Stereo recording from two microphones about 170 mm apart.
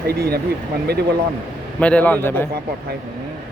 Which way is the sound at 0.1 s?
65° right (ahead or behind).